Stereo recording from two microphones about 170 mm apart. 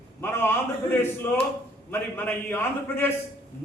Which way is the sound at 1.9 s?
10° left (ahead or behind).